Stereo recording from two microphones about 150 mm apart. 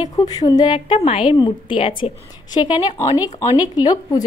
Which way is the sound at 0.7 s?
45° left (ahead or behind).